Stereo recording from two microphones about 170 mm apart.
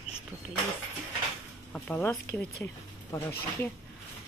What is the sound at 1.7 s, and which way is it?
Speech, 5° left (ahead or behind).